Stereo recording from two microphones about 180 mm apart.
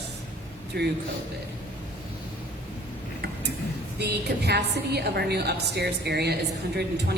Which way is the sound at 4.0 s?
65° right (ahead or behind).